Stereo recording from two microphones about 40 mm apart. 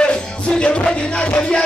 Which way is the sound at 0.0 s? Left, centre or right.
Left.